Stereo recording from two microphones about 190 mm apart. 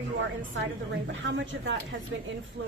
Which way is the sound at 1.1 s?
80° right.